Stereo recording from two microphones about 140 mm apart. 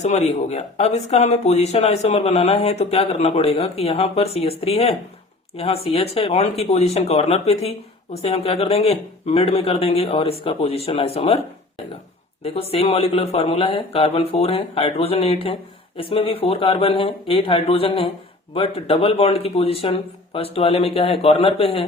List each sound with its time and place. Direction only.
0.0 s speech: 55° left (ahead or behind)
12.7 s speech: 45° left (ahead or behind)